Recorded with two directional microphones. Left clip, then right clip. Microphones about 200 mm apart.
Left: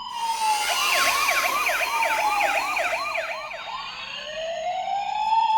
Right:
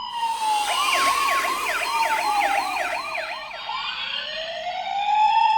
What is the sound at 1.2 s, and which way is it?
Emergency vehicle, 10° right (ahead or behind).